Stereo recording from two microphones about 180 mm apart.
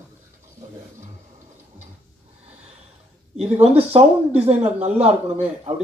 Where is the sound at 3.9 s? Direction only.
35° right (ahead or behind).